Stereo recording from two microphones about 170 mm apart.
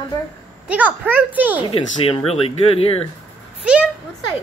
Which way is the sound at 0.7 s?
10° right (ahead or behind).